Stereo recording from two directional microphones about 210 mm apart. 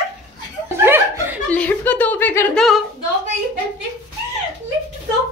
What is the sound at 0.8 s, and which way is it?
Chuckle, 10° right (ahead or behind).